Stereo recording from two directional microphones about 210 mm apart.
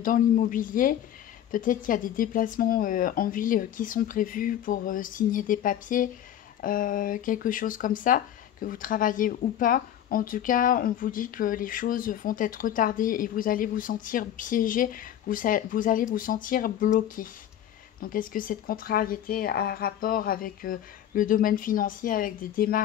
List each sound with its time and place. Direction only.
0.0 s speech: 40° left (ahead or behind)